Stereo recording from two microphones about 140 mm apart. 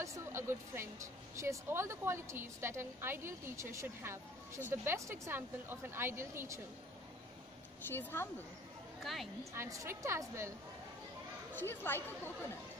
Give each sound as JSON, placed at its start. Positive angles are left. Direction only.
{"t": 0.0, "sound": "a woman's voice", "side_deg": -20}
{"t": 7.9, "sound": "speech", "side_deg": 15}
{"t": 9.0, "sound": "a woman's voice", "side_deg": 0}
{"t": 9.4, "sound": "speech", "side_deg": -20}
{"t": 11.5, "sound": "speech", "side_deg": 15}